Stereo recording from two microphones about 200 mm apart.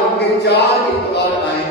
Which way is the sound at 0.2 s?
55° left (ahead or behind).